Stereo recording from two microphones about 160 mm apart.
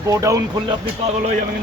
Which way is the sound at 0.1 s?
20° right (ahead or behind).